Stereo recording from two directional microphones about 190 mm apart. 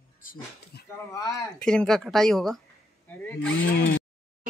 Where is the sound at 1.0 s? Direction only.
20° left (ahead or behind).